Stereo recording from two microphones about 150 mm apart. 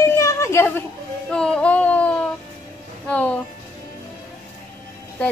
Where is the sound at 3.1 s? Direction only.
10° left (ahead or behind).